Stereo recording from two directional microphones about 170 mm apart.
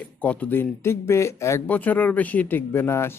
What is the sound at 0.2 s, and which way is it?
Speech, 10° left (ahead or behind).